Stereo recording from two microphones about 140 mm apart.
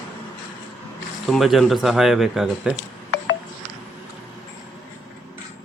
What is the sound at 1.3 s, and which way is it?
Speech, centre (ahead or behind).